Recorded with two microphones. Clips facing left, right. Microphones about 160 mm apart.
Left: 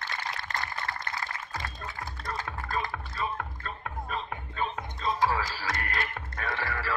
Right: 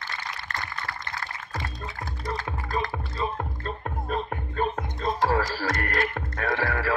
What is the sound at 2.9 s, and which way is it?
Music, 30° right (ahead or behind).